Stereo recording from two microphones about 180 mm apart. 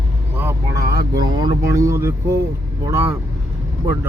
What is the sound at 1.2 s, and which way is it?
Speech, 25° right (ahead or behind).